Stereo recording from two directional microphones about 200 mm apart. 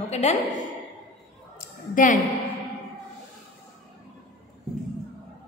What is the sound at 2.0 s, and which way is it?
Speech, 40° left (ahead or behind).